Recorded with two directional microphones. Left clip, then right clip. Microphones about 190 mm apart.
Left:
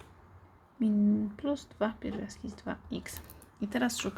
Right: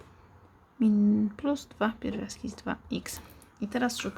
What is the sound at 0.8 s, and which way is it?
A woman's voice, 15° right (ahead or behind).